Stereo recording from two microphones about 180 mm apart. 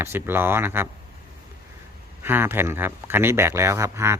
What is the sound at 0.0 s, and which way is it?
Speech, 15° right (ahead or behind).